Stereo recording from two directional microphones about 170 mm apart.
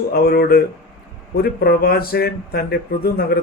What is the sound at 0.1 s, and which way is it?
Speech, 60° left (ahead or behind).